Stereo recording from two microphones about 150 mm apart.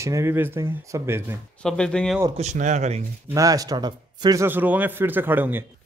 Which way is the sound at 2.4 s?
50° right (ahead or behind).